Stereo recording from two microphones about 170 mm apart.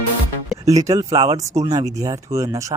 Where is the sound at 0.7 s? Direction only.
20° right (ahead or behind).